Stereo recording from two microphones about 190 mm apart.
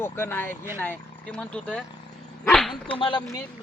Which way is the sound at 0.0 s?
10° left (ahead or behind).